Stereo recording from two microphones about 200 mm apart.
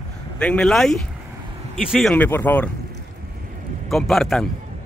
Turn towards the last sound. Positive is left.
turn(degrees=0)  # may be behind; listen again after turning